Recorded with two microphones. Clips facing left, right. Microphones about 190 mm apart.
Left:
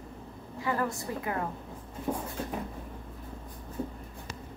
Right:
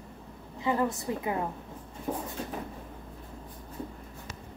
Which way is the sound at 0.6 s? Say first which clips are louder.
Right 3 dB; 20° right (ahead or behind).